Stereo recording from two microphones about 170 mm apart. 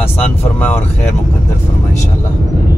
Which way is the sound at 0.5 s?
10° left (ahead or behind).